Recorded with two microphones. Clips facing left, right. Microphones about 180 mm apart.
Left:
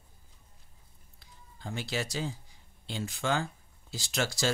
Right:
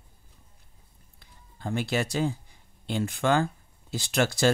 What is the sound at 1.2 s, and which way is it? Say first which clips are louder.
Speech: right 6 dB; 55° right (ahead or behind).